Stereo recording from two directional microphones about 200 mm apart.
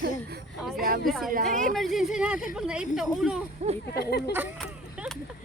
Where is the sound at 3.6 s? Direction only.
35° right (ahead or behind).